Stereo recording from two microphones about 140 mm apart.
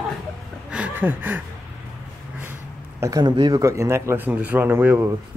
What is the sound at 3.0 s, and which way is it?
A man's voice, 25° right (ahead or behind).